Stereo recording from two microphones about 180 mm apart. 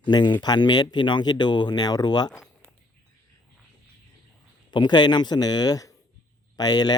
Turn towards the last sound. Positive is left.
turn(degrees=20)  # may be behind; listen again after turning